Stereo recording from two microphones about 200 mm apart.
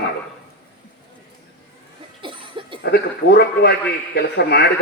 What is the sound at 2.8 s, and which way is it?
A man's voice, 55° left (ahead or behind).